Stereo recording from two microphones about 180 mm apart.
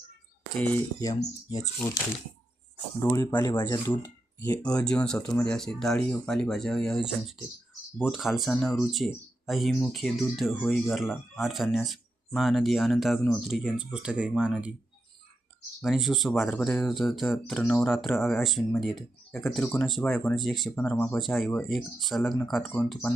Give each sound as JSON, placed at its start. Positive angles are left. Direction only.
{"t": 0.9, "sound": "speech", "side_deg": 20}
{"t": 3.0, "sound": "speech", "side_deg": 15}
{"t": 10.9, "sound": "speech", "side_deg": 0}
{"t": 15.8, "sound": "speech", "side_deg": 0}
{"t": 17.6, "sound": "speech", "side_deg": 10}
{"t": 17.9, "sound": "speech", "side_deg": 0}